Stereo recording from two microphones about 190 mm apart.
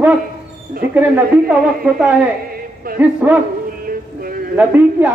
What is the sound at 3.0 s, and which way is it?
Speech, 10° right (ahead or behind).